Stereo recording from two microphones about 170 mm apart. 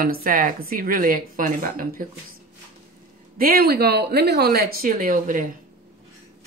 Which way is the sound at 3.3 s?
60° right (ahead or behind).